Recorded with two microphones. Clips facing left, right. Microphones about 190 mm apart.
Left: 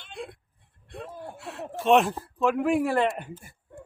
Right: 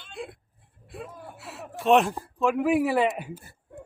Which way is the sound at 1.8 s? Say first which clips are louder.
Even; centre (ahead or behind).